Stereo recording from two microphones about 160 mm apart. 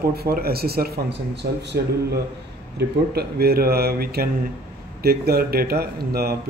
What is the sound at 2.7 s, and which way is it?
Speech, 80° right.